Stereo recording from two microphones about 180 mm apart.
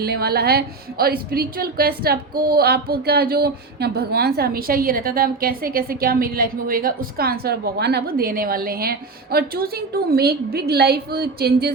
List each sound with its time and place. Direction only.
0.0 s a woman's voice: 60° right (ahead or behind)